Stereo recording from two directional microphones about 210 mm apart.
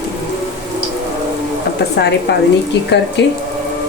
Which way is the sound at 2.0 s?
50° left (ahead or behind).